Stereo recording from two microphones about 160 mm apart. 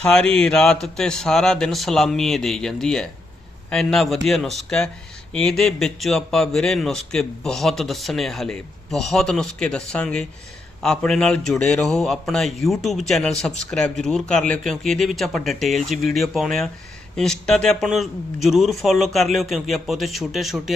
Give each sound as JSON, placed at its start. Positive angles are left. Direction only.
{"t": 0.0, "sound": "speech", "side_deg": 5}